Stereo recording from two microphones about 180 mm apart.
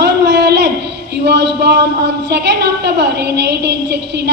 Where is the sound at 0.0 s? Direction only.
75° right (ahead or behind).